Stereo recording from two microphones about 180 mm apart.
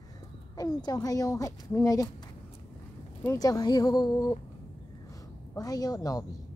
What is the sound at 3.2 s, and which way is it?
Speech, 20° left (ahead or behind).